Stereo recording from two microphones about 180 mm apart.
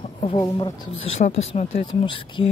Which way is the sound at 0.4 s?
20° left (ahead or behind).